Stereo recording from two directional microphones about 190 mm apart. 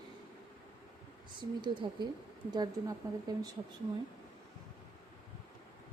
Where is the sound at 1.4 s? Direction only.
25° right (ahead or behind).